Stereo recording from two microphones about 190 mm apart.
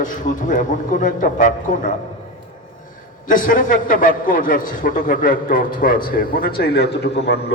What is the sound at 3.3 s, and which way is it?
A man's voice, 45° left (ahead or behind).